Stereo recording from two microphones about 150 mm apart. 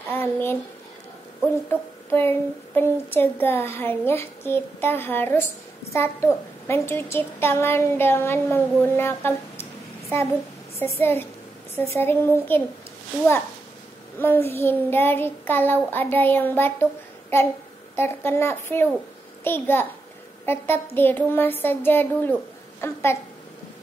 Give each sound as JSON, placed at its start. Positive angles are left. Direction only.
{"t": 0.1, "sound": "a sound", "side_deg": 15}
{"t": 1.7, "sound": "a child's voice", "side_deg": 15}
{"t": 14.2, "sound": "speech", "side_deg": 15}
{"t": 17.9, "sound": "speech", "side_deg": 15}